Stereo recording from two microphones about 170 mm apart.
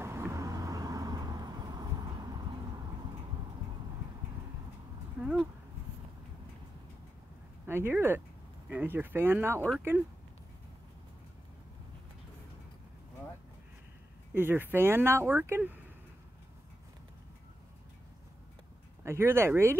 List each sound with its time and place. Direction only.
0.0 s vehicle: 15° right (ahead or behind)
5.2 s speech: centre (ahead or behind)
7.6 s speech: 15° right (ahead or behind)
14.3 s speech: 10° right (ahead or behind)
19.0 s speech: 15° right (ahead or behind)